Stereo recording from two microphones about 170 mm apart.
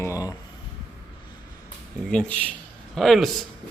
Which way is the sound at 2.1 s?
5° left (ahead or behind).